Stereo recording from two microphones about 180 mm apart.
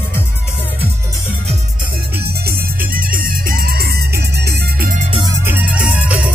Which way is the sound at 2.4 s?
55° right (ahead or behind).